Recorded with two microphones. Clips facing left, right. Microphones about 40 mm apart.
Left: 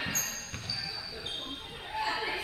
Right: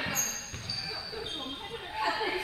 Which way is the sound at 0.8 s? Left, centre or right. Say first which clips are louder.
Right 2 dB; centre.